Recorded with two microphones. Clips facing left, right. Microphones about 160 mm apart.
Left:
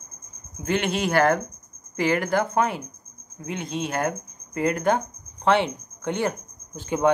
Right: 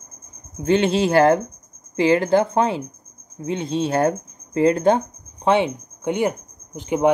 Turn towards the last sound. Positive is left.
turn(degrees=-15)  # may be behind; listen again after turning